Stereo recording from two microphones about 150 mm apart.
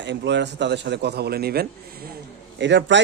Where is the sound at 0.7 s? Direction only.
90° right.